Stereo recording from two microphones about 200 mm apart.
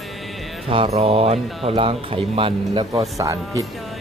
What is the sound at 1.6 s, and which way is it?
Speech, 30° right (ahead or behind).